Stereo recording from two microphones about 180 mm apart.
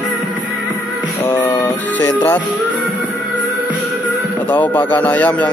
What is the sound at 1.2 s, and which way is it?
Music, 10° left (ahead or behind).